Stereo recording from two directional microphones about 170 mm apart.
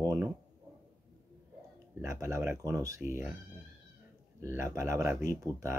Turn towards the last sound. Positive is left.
turn(degrees=-15)  # may be behind; listen again after turning